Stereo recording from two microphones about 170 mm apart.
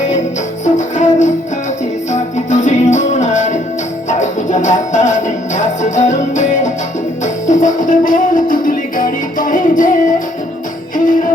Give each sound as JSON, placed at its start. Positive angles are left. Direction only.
{"t": 0.6, "sound": "music", "side_deg": 45}
{"t": 10.9, "sound": "music", "side_deg": 50}